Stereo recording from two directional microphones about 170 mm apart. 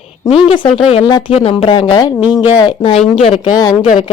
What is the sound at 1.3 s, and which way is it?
Speech, 35° left (ahead or behind).